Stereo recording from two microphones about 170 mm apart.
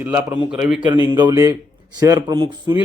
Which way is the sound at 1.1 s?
25° right (ahead or behind).